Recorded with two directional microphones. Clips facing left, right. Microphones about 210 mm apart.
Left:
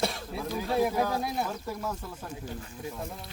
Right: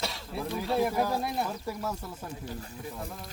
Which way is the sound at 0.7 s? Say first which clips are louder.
Left 1 dB; centre (ahead or behind).